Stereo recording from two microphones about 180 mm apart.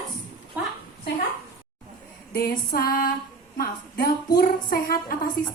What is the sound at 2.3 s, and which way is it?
A woman's voice, 55° left (ahead or behind).